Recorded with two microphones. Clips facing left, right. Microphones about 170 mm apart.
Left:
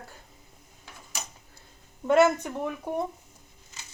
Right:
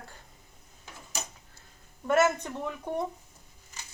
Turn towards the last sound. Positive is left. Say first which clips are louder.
# left 3 dB
turn(degrees=10)  # may be behind; listen again after turning